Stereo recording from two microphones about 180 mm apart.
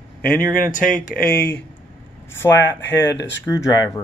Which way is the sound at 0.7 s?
50° left (ahead or behind).